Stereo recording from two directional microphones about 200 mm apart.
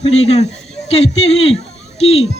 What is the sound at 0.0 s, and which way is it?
A man's voice, 30° left (ahead or behind).